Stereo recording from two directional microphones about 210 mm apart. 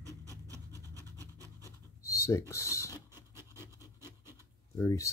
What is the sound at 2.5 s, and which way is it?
Speech, 15° left (ahead or behind).